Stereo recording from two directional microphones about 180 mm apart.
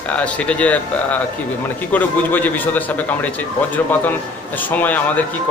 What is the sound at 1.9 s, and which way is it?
A man's voice, 10° left (ahead or behind).